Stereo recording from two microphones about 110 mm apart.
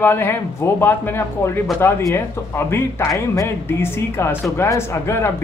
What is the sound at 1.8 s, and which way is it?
Speech, 20° left (ahead or behind).